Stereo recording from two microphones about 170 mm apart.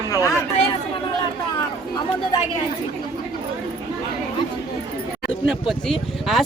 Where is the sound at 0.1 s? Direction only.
20° left (ahead or behind).